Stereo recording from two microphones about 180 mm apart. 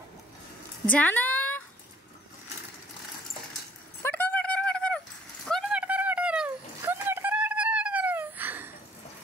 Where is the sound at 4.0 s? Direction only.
10° left (ahead or behind); by 8.7 s 10° right (ahead or behind).